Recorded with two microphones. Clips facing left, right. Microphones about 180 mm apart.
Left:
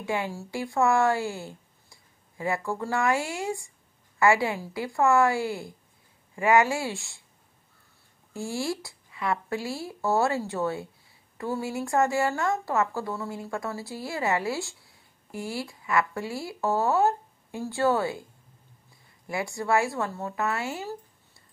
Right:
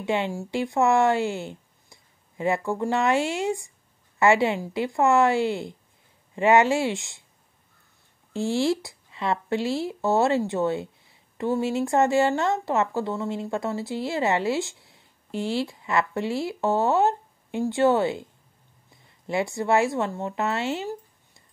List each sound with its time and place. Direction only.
0.0 s speech: 20° right (ahead or behind)
8.3 s speech: 25° right (ahead or behind)
19.2 s speech: 25° right (ahead or behind)